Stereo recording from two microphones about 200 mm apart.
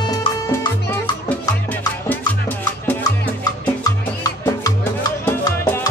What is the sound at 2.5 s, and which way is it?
Music, 10° left (ahead or behind).